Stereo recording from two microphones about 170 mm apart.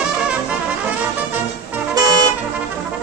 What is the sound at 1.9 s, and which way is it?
Vehicle, 25° right (ahead or behind).